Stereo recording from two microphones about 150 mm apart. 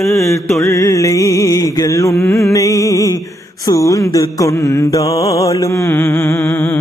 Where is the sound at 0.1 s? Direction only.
20° left (ahead or behind).